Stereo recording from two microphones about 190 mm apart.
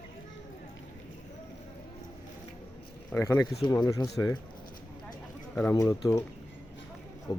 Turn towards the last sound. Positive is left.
turn(degrees=25)  # may be behind; listen again after turning